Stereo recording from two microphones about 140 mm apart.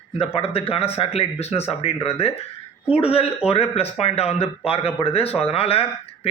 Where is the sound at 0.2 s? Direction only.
45° left (ahead or behind).